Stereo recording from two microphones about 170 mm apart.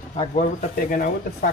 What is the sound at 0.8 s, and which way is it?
Speech, 55° left (ahead or behind).